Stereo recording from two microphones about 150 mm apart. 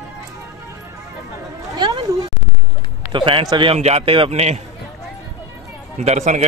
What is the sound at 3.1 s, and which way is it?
A man's voice, 35° right (ahead or behind).